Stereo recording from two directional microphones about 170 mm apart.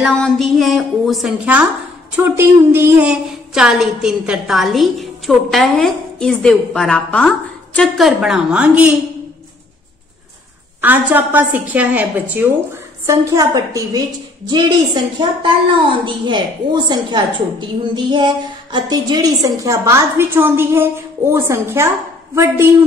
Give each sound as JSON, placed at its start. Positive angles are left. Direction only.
{"t": 0.0, "sound": "a woman's voice", "side_deg": 0}
{"t": 10.8, "sound": "a woman's voice", "side_deg": -10}